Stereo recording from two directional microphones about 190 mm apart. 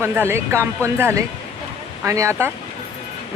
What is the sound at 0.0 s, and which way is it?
Speech, 10° right (ahead or behind).